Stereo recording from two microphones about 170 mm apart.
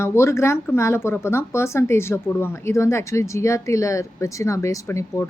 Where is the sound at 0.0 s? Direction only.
15° left (ahead or behind).